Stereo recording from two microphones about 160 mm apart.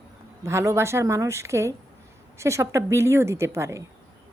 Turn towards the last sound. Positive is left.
turn(degrees=-20)  # may be behind; listen again after turning